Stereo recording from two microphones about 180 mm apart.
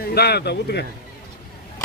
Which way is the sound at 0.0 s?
60° left (ahead or behind).